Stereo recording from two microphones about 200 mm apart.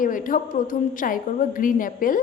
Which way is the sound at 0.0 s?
40° left (ahead or behind).